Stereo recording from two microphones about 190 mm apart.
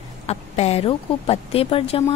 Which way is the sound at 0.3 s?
35° left (ahead or behind).